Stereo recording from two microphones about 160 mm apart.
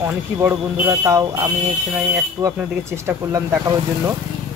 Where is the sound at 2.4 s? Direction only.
20° right (ahead or behind).